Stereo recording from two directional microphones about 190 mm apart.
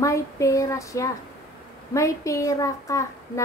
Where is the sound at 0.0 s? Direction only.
15° left (ahead or behind).